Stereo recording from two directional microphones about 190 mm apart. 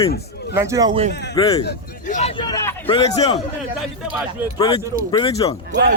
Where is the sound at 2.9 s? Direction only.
25° left (ahead or behind).